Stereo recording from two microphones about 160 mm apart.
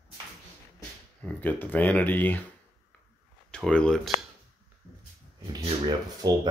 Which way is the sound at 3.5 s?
5° left (ahead or behind).